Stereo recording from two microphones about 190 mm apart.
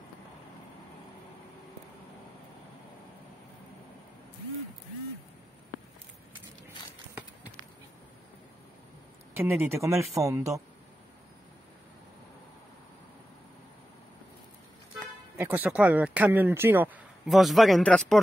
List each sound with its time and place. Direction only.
9.4 s speech: 10° right (ahead or behind)
15.3 s speech: 10° right (ahead or behind)